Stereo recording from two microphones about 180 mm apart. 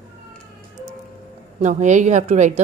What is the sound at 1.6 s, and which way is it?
Speech, 40° right (ahead or behind).